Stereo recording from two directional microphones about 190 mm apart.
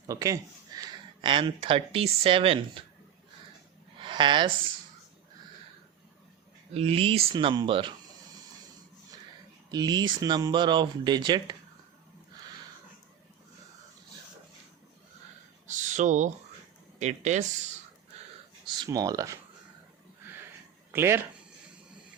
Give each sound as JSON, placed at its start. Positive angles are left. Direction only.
{"t": 0.1, "sound": "speech", "side_deg": -20}
{"t": 4.0, "sound": "speech", "side_deg": -25}
{"t": 6.7, "sound": "speech", "side_deg": -30}
{"t": 9.7, "sound": "speech", "side_deg": -20}
{"t": 15.6, "sound": "a sound", "side_deg": -40}
{"t": 17.0, "sound": "speech", "side_deg": -35}
{"t": 18.6, "sound": "speech", "side_deg": -20}
{"t": 20.9, "sound": "speech", "side_deg": -15}